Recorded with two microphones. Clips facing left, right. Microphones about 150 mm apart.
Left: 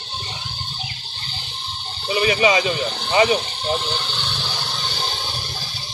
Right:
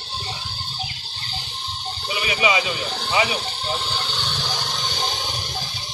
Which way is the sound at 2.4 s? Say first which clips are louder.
Left 1 dB; 40° left (ahead or behind).